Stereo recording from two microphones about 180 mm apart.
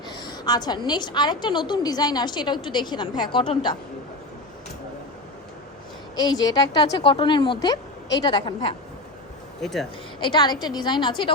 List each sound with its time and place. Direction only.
0.1 s a woman's voice: 25° left (ahead or behind)
6.1 s a woman's voice: 20° left (ahead or behind)
9.6 s speech: centre (ahead or behind)
10.2 s a woman's voice: 25° left (ahead or behind)